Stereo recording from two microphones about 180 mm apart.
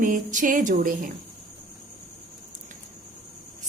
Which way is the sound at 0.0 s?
45° right (ahead or behind).